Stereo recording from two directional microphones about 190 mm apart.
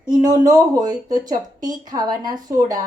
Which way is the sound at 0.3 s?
20° right (ahead or behind).